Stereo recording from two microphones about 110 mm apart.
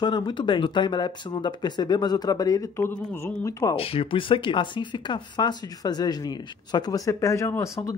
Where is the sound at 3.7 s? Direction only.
55° left (ahead or behind).